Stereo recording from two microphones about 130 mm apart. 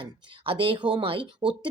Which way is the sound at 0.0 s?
40° right (ahead or behind).